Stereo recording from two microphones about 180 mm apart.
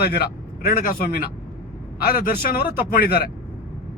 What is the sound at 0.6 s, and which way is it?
Speech, 50° left (ahead or behind).